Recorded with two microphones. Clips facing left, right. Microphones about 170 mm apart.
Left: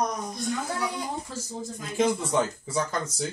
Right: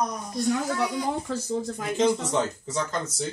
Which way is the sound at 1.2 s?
65° right (ahead or behind).